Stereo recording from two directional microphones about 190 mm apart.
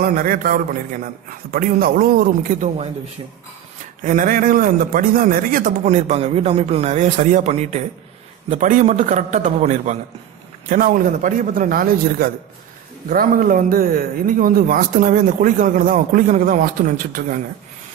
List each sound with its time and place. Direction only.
0.0 s speech: 50° right (ahead or behind)
4.0 s a man's voice: 45° right (ahead or behind)